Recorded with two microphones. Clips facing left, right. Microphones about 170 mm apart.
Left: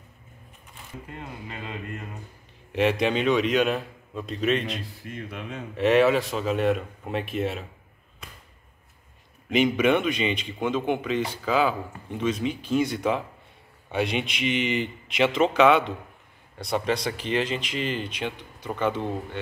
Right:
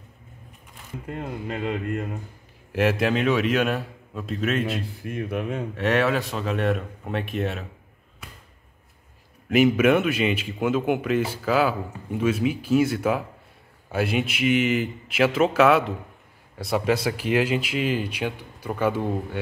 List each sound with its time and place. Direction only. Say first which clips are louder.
1.1 s speech: right 9 dB; 60° right (ahead or behind)
2.7 s a man's voice: right 1 dB; 5° right (ahead or behind)
5.0 s speech: right 8 dB; 55° right (ahead or behind)
5.8 s a man's voice: left 4 dB; centre (ahead or behind)
9.5 s a man's voice: right 3 dB; 5° right (ahead or behind)